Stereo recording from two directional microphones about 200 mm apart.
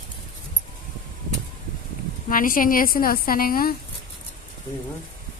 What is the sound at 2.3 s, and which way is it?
A woman's voice, 45° left (ahead or behind).